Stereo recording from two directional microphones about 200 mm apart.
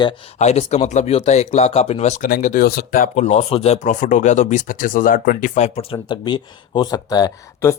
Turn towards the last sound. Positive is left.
turn(degrees=20)  # may be behind; listen again after turning